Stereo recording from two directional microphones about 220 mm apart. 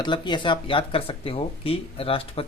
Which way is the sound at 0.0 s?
20° left (ahead or behind).